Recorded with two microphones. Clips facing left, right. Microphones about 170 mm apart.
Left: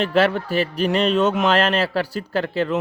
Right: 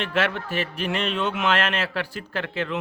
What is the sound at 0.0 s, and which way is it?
A man's voice, 35° left (ahead or behind).